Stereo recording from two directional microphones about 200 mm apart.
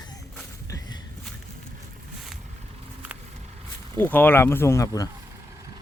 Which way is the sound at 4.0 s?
10° left (ahead or behind).